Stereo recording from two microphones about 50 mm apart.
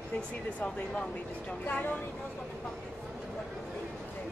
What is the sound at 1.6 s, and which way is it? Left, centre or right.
Speech, left.